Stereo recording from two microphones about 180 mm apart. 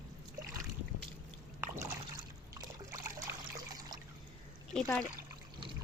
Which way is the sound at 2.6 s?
20° right (ahead or behind).